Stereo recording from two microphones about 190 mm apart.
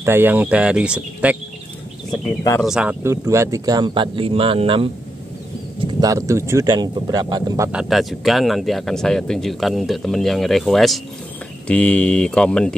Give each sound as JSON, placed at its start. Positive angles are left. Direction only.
{"t": 0.0, "sound": "speech", "side_deg": -10}
{"t": 2.6, "sound": "speech", "side_deg": -5}
{"t": 5.9, "sound": "speech", "side_deg": -20}
{"t": 7.7, "sound": "speech", "side_deg": 0}